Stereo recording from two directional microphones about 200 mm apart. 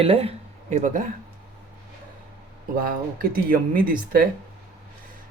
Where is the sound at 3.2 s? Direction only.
45° right (ahead or behind).